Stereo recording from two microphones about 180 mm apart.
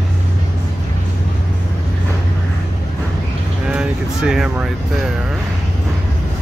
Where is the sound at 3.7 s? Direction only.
5° right (ahead or behind).